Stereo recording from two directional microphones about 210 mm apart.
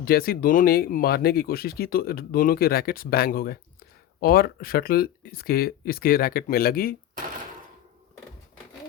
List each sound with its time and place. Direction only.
0.0 s speech: 45° left (ahead or behind)